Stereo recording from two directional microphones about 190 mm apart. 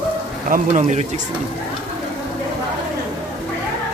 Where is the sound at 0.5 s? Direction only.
40° right (ahead or behind).